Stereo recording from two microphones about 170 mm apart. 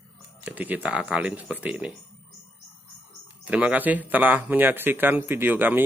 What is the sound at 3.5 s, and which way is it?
Speech, 10° right (ahead or behind).